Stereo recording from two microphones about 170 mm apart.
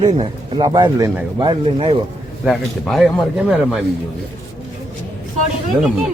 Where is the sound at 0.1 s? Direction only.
35° right (ahead or behind).